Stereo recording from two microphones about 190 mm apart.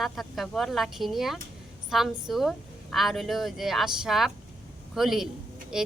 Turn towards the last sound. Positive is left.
turn(degrees=-5)  # may be behind; listen again after turning